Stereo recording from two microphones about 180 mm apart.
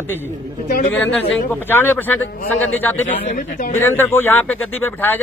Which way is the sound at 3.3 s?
50° left (ahead or behind).